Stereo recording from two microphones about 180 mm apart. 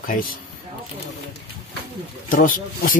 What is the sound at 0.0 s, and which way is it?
Speech, 50° left (ahead or behind).